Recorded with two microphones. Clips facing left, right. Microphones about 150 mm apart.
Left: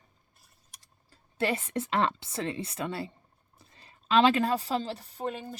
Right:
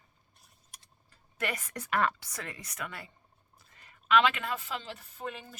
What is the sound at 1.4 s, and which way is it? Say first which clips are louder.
A woman's voice: left 7 dB; 30° left (ahead or behind).